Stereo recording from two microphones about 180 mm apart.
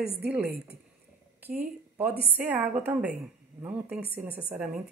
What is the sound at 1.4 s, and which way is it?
A woman's voice, 10° right (ahead or behind).